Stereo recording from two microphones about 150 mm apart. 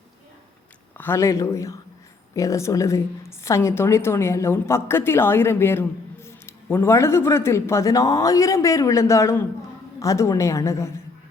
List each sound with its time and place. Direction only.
0.9 s a woman's voice: 15° left (ahead or behind)